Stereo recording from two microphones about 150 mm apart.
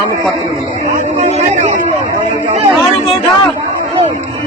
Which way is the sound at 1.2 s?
55° right (ahead or behind).